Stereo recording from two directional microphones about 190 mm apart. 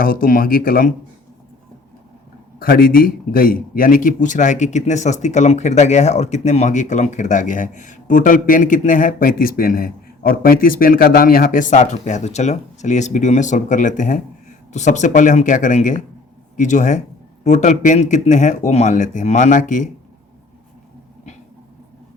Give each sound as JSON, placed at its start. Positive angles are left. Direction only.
{"t": 0.0, "sound": "speech", "side_deg": 50}
{"t": 2.6, "sound": "speech", "side_deg": 50}